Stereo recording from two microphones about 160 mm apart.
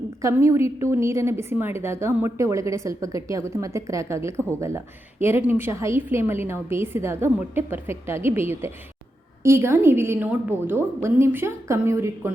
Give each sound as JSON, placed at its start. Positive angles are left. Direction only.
{"t": 0.2, "sound": "a woman's voice", "side_deg": -20}